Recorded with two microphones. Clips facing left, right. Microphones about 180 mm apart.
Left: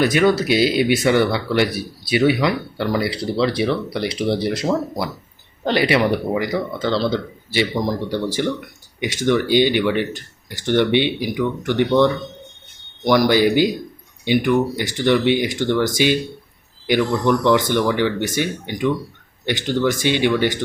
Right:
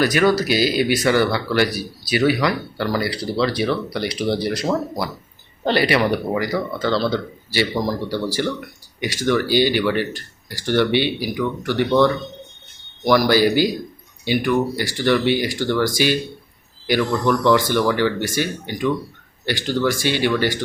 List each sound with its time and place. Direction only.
0.0 s speech: 25° left (ahead or behind)
5.6 s speech: 20° left (ahead or behind)
16.8 s speech: 15° left (ahead or behind)